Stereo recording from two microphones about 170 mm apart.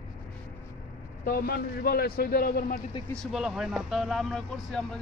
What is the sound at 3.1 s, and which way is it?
Speech, centre (ahead or behind).